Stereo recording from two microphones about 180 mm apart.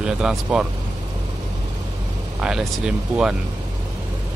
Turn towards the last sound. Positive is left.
turn(degrees=-5)  # may be behind; listen again after turning